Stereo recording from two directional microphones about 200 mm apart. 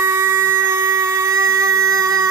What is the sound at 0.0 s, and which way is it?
Shofar, 15° right (ahead or behind).